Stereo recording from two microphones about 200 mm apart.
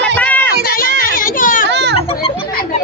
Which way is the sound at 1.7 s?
60° right (ahead or behind).